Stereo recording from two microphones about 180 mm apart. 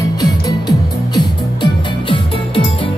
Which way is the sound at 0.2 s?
20° left (ahead or behind).